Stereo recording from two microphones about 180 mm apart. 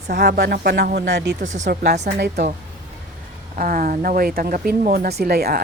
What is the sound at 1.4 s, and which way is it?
Speech, 45° right (ahead or behind).